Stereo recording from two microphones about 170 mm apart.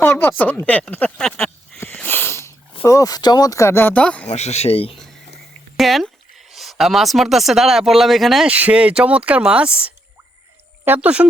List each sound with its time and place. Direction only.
0.0 s a sound: 10° left (ahead or behind)
1.8 s wheeze: 10° left (ahead or behind)
2.8 s speech: 20° left (ahead or behind)
4.3 s speech: 40° left (ahead or behind)
5.7 s speech: centre (ahead or behind)